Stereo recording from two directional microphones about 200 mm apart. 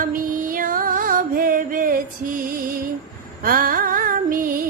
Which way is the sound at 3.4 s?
45° right (ahead or behind).